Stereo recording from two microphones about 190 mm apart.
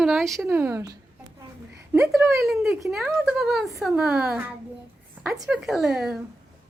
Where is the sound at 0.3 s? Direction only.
10° right (ahead or behind).